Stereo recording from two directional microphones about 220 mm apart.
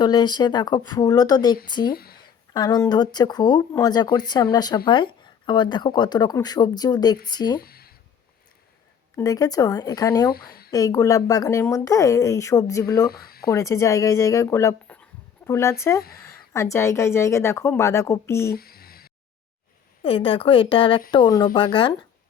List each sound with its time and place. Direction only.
0.0 s speech: 20° left (ahead or behind)
1.9 s speech: 45° left (ahead or behind)
2.2 s a woman's voice: 20° left (ahead or behind)
7.6 s a sound: 45° left (ahead or behind)
9.1 s a woman's voice: 15° left (ahead or behind)
10.3 s speech: 45° left (ahead or behind)
10.7 s a woman's voice: 15° left (ahead or behind)
13.1 s speech: 45° left (ahead or behind)
13.5 s a woman's voice: 15° left (ahead or behind)
18.4 s a sound: 45° left (ahead or behind)
20.0 s speech: 25° left (ahead or behind)